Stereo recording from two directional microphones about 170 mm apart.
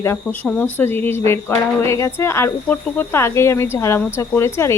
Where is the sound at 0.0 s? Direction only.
15° left (ahead or behind).